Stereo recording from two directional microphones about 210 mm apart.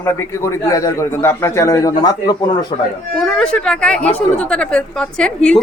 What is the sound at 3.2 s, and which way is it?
A woman's voice, 5° left (ahead or behind).